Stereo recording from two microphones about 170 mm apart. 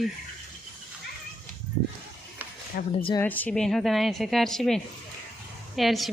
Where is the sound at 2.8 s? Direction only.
60° left (ahead or behind).